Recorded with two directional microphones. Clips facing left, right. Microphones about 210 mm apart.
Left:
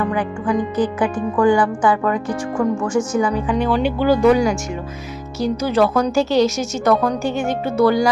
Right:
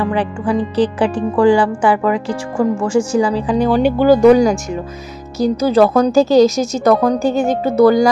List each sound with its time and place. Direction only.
0.0 s a woman's voice: 30° right (ahead or behind)